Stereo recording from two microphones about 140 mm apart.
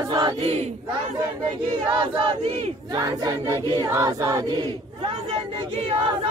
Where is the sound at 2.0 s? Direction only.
40° right (ahead or behind).